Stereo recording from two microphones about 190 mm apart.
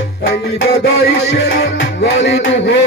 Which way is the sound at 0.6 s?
65° left (ahead or behind).